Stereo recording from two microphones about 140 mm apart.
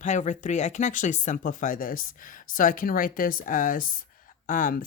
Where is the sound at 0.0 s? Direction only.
60° left (ahead or behind).